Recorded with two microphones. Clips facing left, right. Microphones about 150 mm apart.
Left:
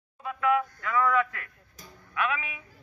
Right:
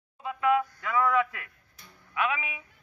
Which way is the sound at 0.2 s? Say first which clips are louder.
Right 1 dB; 20° right (ahead or behind).